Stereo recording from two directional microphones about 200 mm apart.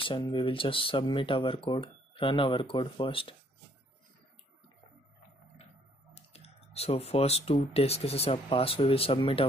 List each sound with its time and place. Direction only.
0.0 s speech: 25° left (ahead or behind)
6.1 s speech: 30° left (ahead or behind)